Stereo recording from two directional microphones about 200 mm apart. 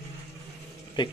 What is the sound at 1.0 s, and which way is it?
Speech, 20° left (ahead or behind).